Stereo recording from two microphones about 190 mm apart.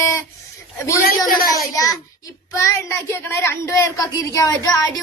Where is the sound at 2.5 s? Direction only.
15° left (ahead or behind).